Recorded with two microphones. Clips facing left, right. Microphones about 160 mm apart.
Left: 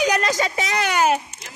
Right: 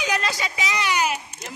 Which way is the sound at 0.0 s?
45° left (ahead or behind).